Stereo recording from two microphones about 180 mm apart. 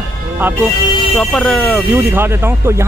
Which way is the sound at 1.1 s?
5° left (ahead or behind).